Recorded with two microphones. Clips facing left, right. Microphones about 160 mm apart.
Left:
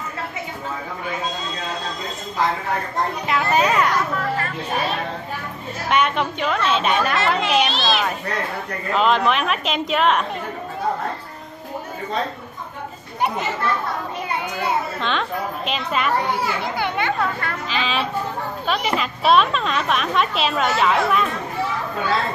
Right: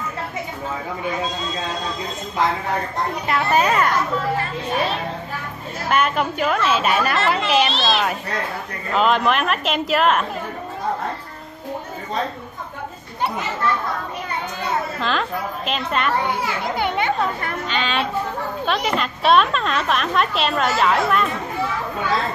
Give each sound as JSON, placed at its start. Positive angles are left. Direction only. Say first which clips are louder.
{"t": 3.3, "sound": "a woman's voice", "louder": "right 1 dB", "side_deg": 0}
{"t": 5.9, "sound": "a woman's voice", "louder": "even", "side_deg": 0}
{"t": 15.0, "sound": "a woman's voice", "louder": "right 1 dB", "side_deg": 0}
{"t": 17.0, "sound": "speech", "louder": "right 1 dB", "side_deg": -20}
{"t": 17.6, "sound": "a woman's voice", "louder": "right 1 dB", "side_deg": 5}